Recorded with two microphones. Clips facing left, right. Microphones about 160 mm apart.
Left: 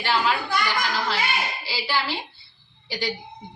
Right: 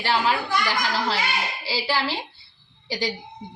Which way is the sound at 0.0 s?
30° right (ahead or behind).